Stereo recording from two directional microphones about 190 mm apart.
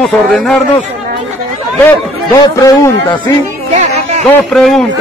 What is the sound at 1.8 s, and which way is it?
A man's voice, 15° left (ahead or behind).